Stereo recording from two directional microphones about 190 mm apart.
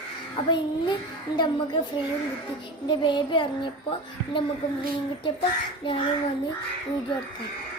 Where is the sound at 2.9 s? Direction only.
25° left (ahead or behind).